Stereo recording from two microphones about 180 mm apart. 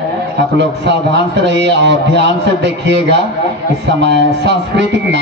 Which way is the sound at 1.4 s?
75° right (ahead or behind).